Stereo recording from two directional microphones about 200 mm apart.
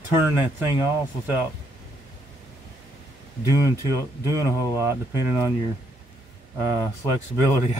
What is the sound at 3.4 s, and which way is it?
Speech, 15° right (ahead or behind).